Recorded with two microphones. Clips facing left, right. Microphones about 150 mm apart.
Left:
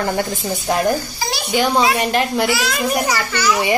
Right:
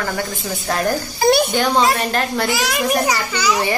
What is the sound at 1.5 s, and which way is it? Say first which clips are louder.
A woman's voice: even; 10° left (ahead or behind).